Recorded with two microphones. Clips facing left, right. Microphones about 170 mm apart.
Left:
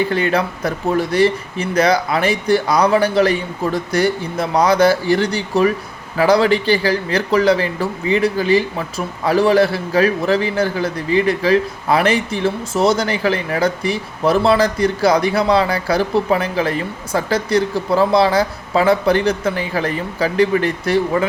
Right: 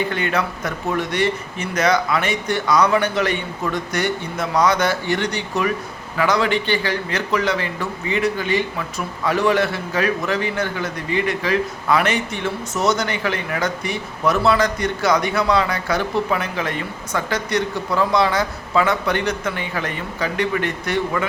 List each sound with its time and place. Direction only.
0.1 s speech: 35° left (ahead or behind)